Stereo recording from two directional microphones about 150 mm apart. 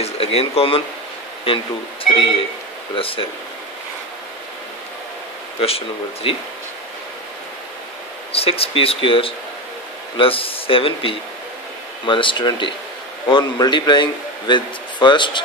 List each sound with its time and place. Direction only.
0.0 s speech: 40° left (ahead or behind)
5.6 s speech: 40° left (ahead or behind)
8.3 s speech: 40° left (ahead or behind)